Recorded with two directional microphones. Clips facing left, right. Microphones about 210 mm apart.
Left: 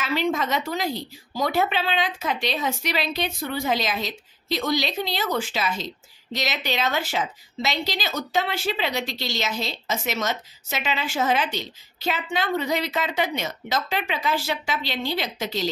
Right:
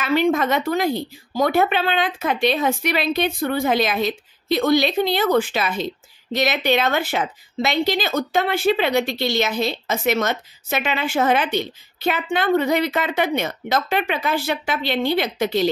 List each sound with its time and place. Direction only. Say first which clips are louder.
0.0 s a woman's voice: right 6 dB; 55° right (ahead or behind)